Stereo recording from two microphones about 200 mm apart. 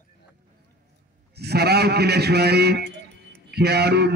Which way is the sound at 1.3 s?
55° right (ahead or behind).